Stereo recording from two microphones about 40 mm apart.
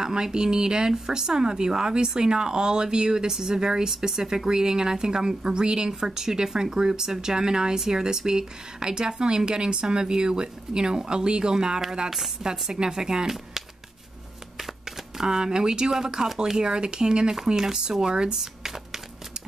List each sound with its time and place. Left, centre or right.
0.0 s speech: centre
15.1 s speech: centre